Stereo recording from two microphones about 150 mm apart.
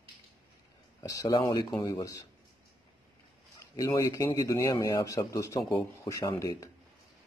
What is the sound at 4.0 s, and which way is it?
A man's voice, 20° left (ahead or behind).